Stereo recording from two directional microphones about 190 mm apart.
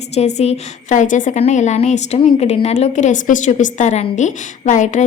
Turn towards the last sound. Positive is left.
turn(degrees=40)  # may be behind; listen again after turning